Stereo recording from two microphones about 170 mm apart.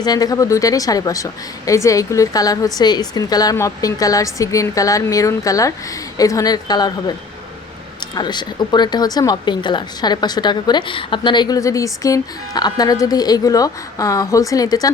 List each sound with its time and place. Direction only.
0.0 s speech: 20° left (ahead or behind)
8.1 s speech: 25° left (ahead or behind)